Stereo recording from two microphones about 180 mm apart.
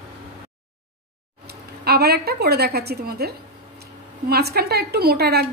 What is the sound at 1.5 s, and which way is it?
A woman's voice, 60° right (ahead or behind).